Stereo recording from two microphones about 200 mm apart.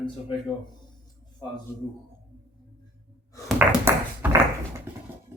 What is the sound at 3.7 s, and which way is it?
Tap, 10° right (ahead or behind).